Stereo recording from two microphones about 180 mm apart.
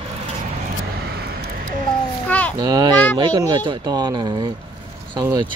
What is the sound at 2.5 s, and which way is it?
Speech, 20° right (ahead or behind).